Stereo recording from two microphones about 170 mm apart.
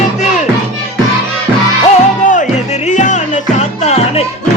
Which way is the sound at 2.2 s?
45° left (ahead or behind).